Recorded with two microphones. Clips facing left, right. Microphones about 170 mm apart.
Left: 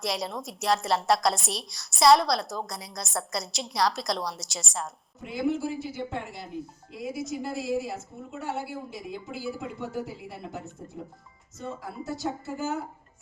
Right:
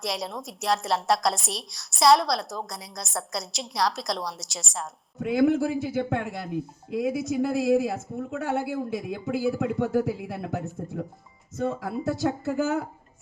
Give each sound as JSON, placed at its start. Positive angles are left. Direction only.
{"t": 0.0, "sound": "a woman's voice", "side_deg": 0}
{"t": 5.2, "sound": "speech", "side_deg": -60}
{"t": 11.6, "sound": "speech", "side_deg": -90}